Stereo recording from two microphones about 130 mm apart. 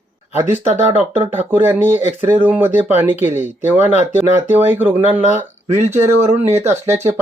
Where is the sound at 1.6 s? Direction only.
15° right (ahead or behind).